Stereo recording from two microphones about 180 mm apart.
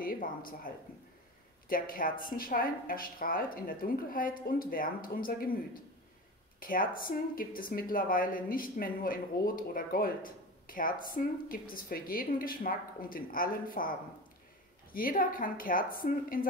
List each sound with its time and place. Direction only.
0.0 s a sound: 50° left (ahead or behind)
1.7 s a woman's voice: 50° left (ahead or behind)
6.6 s a woman's voice: 50° left (ahead or behind)